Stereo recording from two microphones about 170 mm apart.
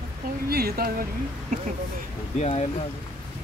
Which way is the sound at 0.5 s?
65° right (ahead or behind).